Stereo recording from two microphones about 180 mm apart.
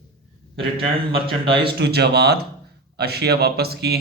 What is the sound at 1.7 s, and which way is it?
Speech, 65° right (ahead or behind).